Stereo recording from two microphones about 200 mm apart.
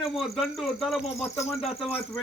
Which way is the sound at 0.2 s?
Centre (ahead or behind).